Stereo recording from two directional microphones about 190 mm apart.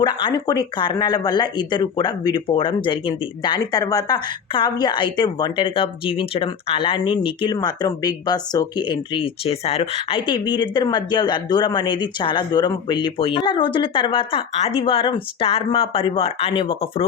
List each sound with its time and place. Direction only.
0.0 s speech: 25° left (ahead or behind)